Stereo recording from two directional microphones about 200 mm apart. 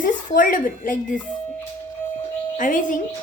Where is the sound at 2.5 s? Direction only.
40° left (ahead or behind).